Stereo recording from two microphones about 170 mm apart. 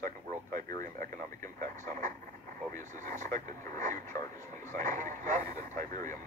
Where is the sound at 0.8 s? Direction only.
50° right (ahead or behind).